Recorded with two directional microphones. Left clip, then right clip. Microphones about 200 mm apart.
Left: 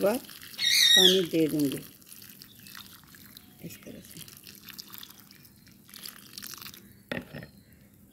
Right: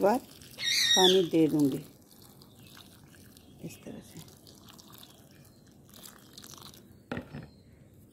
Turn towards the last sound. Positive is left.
turn(degrees=-40)  # may be behind; listen again after turning